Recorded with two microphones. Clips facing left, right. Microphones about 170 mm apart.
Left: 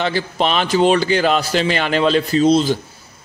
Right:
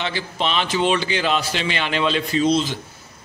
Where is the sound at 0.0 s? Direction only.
45° left (ahead or behind).